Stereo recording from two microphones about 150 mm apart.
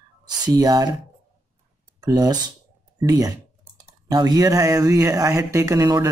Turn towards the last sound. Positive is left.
turn(degrees=-20)  # may be behind; listen again after turning